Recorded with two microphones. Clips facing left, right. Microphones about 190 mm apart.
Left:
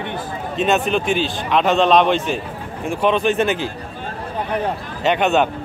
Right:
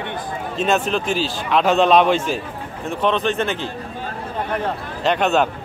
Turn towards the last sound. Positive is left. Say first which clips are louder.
# left 1 dB
turn(degrees=0)  # may be behind; listen again after turning